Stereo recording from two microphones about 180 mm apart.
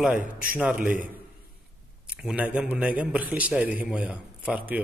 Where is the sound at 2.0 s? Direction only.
5° right (ahead or behind).